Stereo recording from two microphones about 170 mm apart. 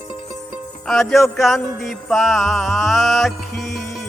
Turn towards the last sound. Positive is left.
turn(degrees=0)  # may be behind; listen again after turning